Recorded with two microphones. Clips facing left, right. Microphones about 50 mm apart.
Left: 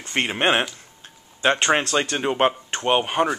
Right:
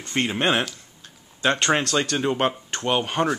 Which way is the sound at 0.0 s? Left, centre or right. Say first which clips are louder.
Left 1 dB; left.